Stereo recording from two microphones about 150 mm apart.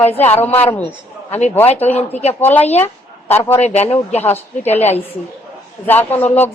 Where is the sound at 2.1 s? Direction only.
45° left (ahead or behind).